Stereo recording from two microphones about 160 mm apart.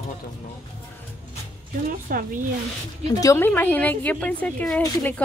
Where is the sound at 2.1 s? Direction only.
65° right (ahead or behind).